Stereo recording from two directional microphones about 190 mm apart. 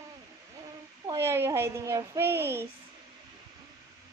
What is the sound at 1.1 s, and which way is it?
Speech, 15° right (ahead or behind).